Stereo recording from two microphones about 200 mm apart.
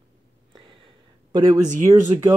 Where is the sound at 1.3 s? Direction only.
20° right (ahead or behind).